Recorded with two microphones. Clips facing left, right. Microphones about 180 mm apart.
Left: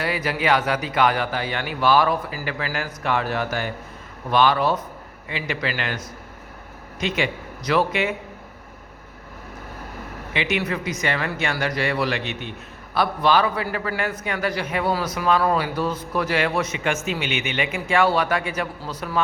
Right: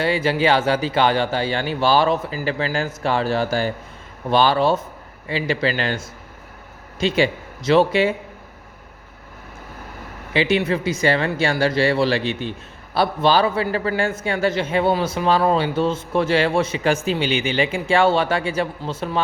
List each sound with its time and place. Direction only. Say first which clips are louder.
0.0 s a man's voice: right 5 dB; 25° right (ahead or behind)
10.3 s speech: right 6 dB; 30° right (ahead or behind)